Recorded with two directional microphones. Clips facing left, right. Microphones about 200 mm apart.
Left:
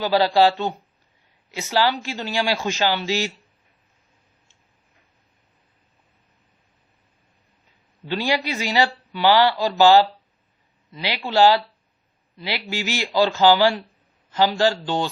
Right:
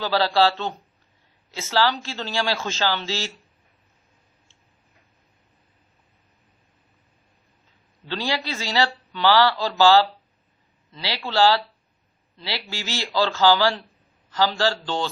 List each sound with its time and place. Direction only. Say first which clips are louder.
0.0 s a man's voice: left 3 dB; 15° left (ahead or behind)
8.0 s a man's voice: left 4 dB; 15° left (ahead or behind)